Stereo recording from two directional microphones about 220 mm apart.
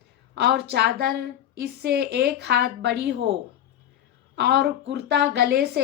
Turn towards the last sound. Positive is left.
turn(degrees=-45)  # may be behind; listen again after turning